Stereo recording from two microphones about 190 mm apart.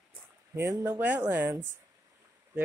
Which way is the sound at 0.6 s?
15° right (ahead or behind).